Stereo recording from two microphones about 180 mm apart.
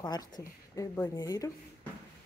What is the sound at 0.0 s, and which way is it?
A woman's voice, 20° left (ahead or behind).